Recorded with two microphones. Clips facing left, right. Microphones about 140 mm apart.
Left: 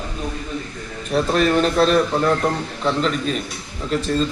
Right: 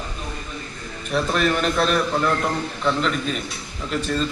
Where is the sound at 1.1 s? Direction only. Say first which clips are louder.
Left 3 dB; 35° left (ahead or behind).